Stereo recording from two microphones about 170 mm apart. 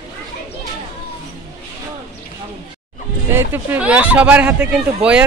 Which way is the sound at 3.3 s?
10° right (ahead or behind).